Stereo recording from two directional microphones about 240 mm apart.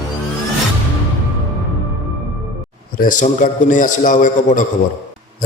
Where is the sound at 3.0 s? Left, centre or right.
Left.